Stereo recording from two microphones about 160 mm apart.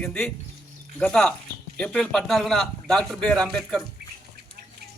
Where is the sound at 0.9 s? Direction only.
Centre (ahead or behind).